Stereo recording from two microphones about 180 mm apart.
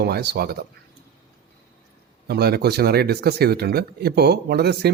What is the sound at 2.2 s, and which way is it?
Speech, 60° right (ahead or behind).